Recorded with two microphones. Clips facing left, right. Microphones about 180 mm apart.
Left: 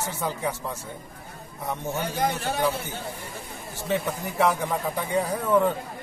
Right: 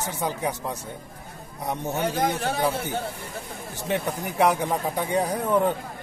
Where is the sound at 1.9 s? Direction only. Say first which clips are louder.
Right 3 dB; 60° right (ahead or behind).